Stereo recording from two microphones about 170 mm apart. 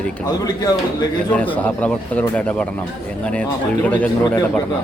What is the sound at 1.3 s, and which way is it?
Speech, 10° left (ahead or behind).